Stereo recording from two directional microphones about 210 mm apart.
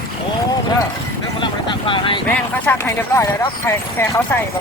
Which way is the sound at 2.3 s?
10° left (ahead or behind).